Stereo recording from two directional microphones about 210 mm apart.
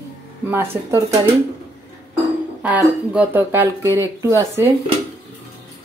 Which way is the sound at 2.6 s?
5° right (ahead or behind).